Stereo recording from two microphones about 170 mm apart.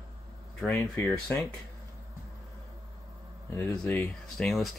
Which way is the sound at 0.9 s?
15° left (ahead or behind).